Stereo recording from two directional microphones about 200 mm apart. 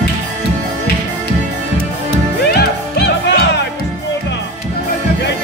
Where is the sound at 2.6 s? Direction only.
55° left (ahead or behind).